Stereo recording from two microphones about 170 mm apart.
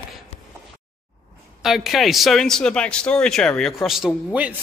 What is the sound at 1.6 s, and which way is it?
A man's voice, centre (ahead or behind).